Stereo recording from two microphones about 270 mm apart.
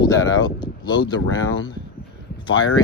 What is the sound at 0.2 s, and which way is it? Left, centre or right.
Speech, left.